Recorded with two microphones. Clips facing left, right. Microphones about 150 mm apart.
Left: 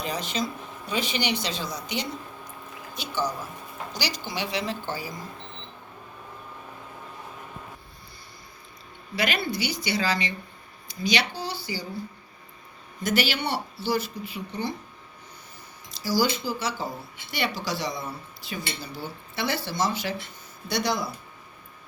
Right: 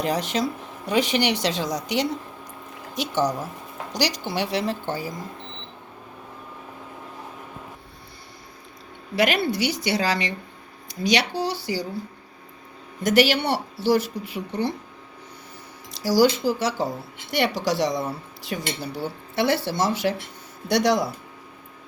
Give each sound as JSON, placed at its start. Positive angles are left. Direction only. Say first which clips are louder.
{"t": 0.0, "sound": "a woman's voice", "louder": "right 6 dB", "side_deg": -75}
{"t": 4.3, "sound": "speech", "louder": "right 5 dB", "side_deg": -60}
{"t": 9.1, "sound": "speech", "louder": "right 6 dB", "side_deg": -70}
{"t": 13.0, "sound": "speech", "louder": "right 7 dB", "side_deg": -75}
{"t": 16.0, "sound": "speech", "louder": "right 6 dB", "side_deg": -75}
{"t": 20.7, "sound": "a woman's voice", "louder": "right 7 dB", "side_deg": -85}